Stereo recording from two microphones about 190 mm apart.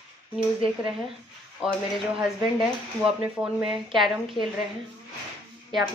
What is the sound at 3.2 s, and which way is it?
Speech, 10° right (ahead or behind).